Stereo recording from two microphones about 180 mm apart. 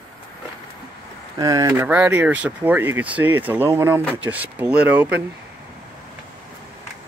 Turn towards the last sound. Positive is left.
turn(degrees=-10)  # may be behind; listen again after turning